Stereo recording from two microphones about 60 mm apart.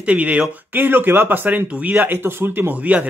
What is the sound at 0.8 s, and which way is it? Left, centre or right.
Speech, right.